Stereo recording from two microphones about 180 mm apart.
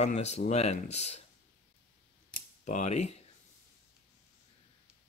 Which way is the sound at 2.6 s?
40° left (ahead or behind).